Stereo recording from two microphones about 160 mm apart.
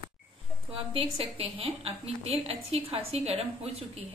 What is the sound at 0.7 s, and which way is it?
A woman's voice, 35° right (ahead or behind).